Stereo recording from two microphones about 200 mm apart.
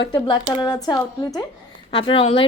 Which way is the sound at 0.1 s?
20° left (ahead or behind).